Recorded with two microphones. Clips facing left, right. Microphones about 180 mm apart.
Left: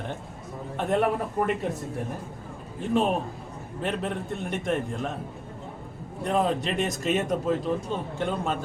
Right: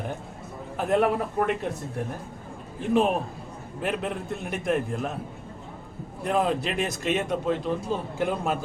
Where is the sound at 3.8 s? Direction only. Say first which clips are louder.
Even; 5° right (ahead or behind).